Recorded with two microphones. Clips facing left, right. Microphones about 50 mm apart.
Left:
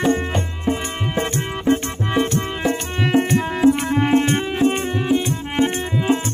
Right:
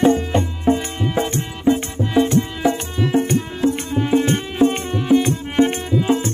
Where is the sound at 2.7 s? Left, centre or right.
Left.